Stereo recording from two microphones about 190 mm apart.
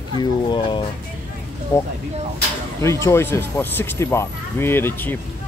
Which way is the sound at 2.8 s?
15° left (ahead or behind).